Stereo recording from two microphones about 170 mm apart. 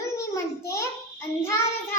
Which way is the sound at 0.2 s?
15° left (ahead or behind).